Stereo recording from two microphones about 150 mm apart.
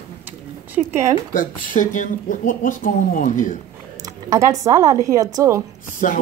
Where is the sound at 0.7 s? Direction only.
15° right (ahead or behind).